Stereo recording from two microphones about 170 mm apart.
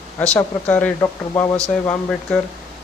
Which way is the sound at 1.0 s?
20° left (ahead or behind).